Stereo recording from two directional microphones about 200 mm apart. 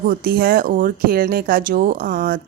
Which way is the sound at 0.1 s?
45° right (ahead or behind).